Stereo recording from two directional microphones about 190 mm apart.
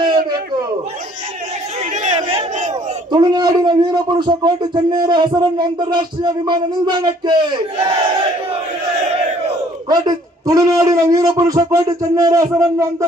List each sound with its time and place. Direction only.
2.0 s a man's voice: 35° right (ahead or behind)
9.8 s a man's voice: 20° right (ahead or behind)